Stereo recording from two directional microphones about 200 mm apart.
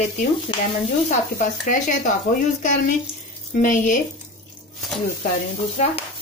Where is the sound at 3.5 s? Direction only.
40° left (ahead or behind).